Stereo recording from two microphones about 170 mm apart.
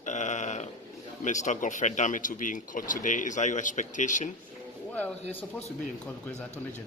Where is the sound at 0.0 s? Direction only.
45° left (ahead or behind).